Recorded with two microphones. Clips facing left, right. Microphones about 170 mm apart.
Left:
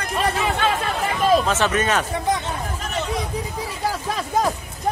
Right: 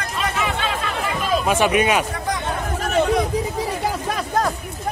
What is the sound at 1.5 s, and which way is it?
Speech, 15° right (ahead or behind).